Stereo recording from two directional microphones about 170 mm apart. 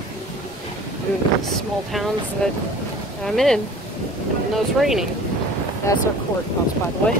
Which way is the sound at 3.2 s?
Centre (ahead or behind).